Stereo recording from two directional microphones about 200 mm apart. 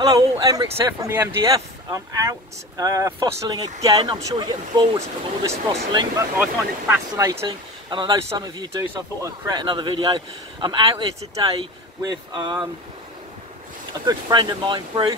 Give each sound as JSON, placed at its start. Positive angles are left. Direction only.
{"t": 0.0, "sound": "speech", "side_deg": -20}
{"t": 14.0, "sound": "speech", "side_deg": -20}